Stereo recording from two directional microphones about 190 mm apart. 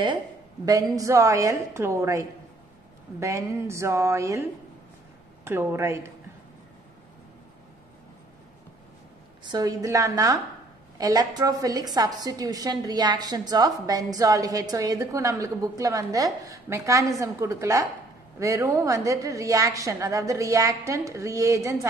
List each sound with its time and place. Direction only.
0.7 s a woman's voice: 20° right (ahead or behind)
9.4 s a woman's voice: 20° right (ahead or behind)